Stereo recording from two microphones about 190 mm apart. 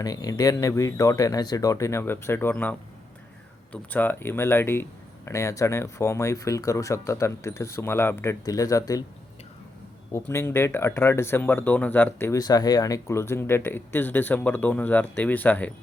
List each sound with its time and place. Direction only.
0.0 s speech: 20° left (ahead or behind)
10.1 s speech: 15° left (ahead or behind)